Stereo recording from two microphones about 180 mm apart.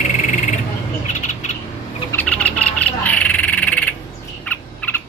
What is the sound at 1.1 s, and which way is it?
Bird, 40° left (ahead or behind).